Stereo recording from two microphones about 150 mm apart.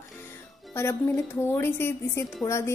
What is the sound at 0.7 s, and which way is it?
A woman's voice, 15° left (ahead or behind).